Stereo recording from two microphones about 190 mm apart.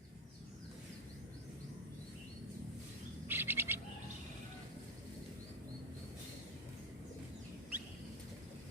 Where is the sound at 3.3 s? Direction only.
10° right (ahead or behind).